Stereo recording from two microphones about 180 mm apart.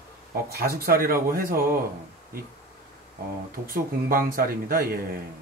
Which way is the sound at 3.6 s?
55° right (ahead or behind).